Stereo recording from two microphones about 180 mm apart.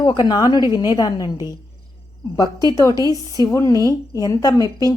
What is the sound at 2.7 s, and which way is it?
A woman's voice, 20° left (ahead or behind).